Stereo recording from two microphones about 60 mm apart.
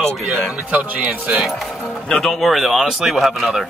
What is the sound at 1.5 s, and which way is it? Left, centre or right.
Speech, centre.